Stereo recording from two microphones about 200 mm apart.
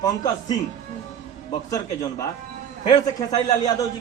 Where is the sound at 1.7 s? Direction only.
15° left (ahead or behind).